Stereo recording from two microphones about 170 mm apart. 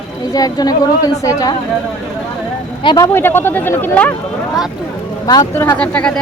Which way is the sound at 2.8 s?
30° left (ahead or behind).